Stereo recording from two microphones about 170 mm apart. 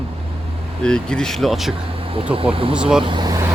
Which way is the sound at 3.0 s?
25° right (ahead or behind).